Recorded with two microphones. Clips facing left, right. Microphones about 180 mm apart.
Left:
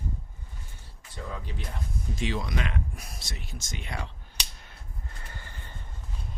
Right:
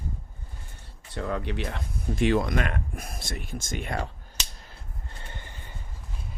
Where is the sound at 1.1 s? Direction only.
70° right (ahead or behind); by 4.1 s 50° right (ahead or behind).